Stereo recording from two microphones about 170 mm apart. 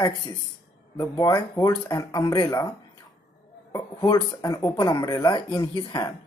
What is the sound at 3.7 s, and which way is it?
Speech, 25° left (ahead or behind).